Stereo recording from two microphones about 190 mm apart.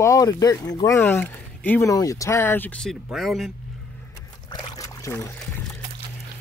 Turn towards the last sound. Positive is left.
turn(degrees=15)  # may be behind; listen again after turning